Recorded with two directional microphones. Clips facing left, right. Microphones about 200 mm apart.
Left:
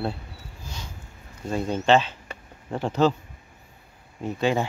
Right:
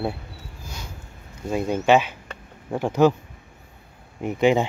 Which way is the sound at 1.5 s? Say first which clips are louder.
Right 2 dB; 10° right (ahead or behind).